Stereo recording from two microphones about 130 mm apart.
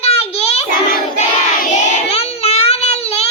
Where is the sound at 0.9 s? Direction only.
90° left.